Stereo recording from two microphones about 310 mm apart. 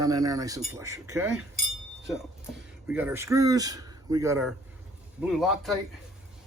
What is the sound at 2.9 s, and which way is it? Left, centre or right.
A man's voice, centre.